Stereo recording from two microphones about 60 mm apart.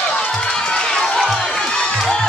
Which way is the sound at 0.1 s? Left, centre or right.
Centre.